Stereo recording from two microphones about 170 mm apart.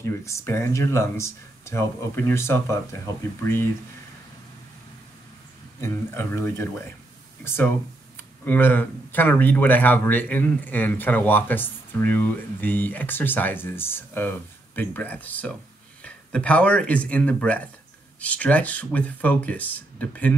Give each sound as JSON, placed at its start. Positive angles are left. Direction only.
{"t": 0.0, "sound": "speech", "side_deg": 15}
{"t": 5.8, "sound": "speech", "side_deg": 15}